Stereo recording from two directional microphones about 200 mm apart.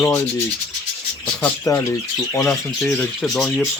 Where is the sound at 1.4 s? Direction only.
15° left (ahead or behind).